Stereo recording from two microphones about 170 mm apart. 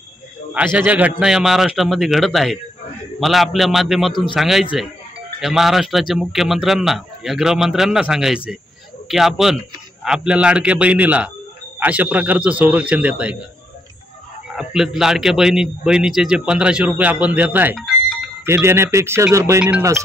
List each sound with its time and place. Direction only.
0.6 s a man's voice: 10° right (ahead or behind)
14.5 s a man's voice: 5° right (ahead or behind)
17.7 s a sound: centre (ahead or behind)
18.4 s a man's voice: 15° right (ahead or behind)